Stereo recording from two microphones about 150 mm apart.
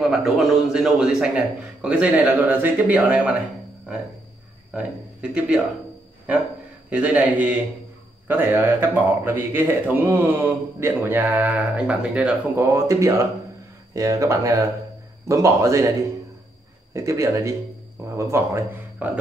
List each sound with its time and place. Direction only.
0.1 s speech: 5° right (ahead or behind)
4.7 s speech: 5° right (ahead or behind)
6.9 s speech: 10° right (ahead or behind)
12.5 s speech: 20° right (ahead or behind)
16.9 s speech: 20° right (ahead or behind)